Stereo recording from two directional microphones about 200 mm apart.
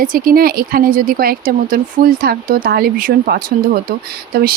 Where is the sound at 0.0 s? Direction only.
45° right (ahead or behind).